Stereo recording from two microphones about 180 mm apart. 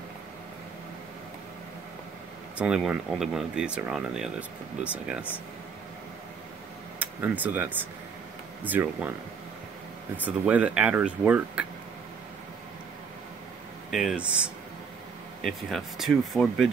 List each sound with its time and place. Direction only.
2.5 s speech: 5° right (ahead or behind)
7.0 s speech: 10° right (ahead or behind)
10.1 s speech: 10° right (ahead or behind)
13.8 s speech: centre (ahead or behind)